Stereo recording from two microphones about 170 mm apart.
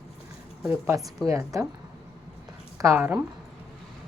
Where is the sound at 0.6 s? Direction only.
15° right (ahead or behind).